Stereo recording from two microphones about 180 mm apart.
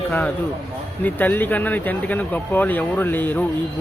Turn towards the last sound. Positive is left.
turn(degrees=10)  # may be behind; listen again after turning